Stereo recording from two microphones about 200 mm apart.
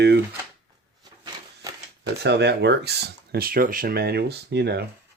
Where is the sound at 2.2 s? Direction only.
55° right (ahead or behind).